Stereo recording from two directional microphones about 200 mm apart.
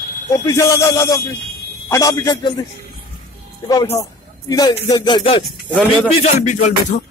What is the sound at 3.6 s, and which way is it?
Speech, 20° left (ahead or behind).